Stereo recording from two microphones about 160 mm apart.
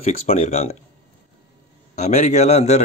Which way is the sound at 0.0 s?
40° left (ahead or behind).